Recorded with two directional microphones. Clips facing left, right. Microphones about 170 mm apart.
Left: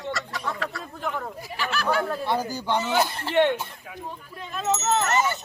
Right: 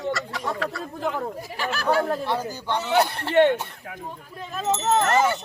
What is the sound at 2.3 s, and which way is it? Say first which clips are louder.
Speech: left 1 dB; 10° left (ahead or behind).